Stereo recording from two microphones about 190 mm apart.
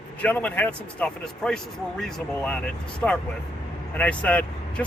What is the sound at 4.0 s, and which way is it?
Speech, 5° left (ahead or behind).